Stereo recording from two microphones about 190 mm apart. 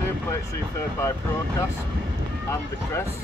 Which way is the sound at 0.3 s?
15° left (ahead or behind).